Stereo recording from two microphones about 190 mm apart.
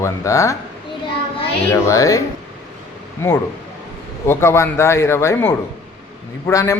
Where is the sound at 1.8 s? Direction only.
15° left (ahead or behind).